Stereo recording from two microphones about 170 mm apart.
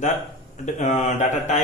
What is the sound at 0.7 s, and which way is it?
Speech, 45° left (ahead or behind).